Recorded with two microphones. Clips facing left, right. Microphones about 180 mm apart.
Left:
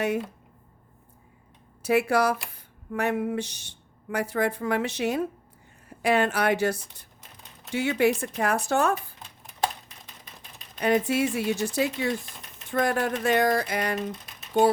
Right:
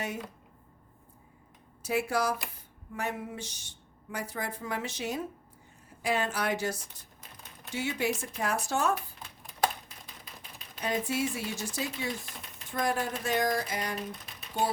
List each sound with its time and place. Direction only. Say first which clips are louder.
1.8 s speech: left 7 dB; 70° left (ahead or behind)
10.8 s speech: left 8 dB; 70° left (ahead or behind)